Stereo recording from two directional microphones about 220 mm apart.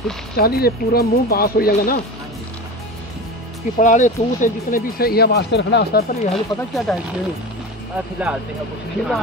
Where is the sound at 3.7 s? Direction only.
35° left (ahead or behind).